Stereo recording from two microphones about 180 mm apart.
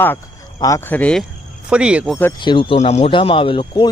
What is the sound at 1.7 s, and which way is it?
Speech, 5° right (ahead or behind).